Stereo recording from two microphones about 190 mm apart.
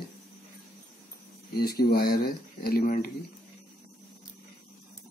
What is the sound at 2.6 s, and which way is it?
Speech, 50° left (ahead or behind).